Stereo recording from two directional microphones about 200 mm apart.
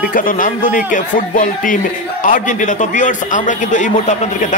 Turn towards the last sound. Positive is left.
turn(degrees=40)  # may be behind; listen again after turning